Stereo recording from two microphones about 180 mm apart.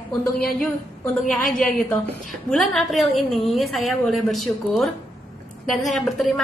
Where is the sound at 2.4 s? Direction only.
Centre (ahead or behind).